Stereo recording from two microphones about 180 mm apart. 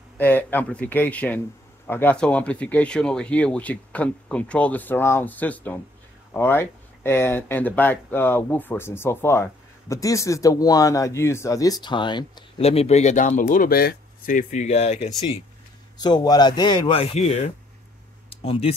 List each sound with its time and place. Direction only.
0.2 s speech: 10° left (ahead or behind); by 15.1 s 40° left (ahead or behind)
16.0 s speech: 25° left (ahead or behind)